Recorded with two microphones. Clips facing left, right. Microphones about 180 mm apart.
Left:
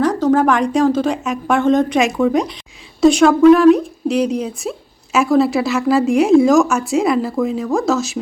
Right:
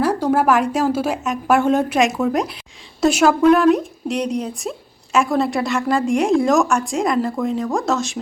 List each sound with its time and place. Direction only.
0.0 s speech: 10° right (ahead or behind)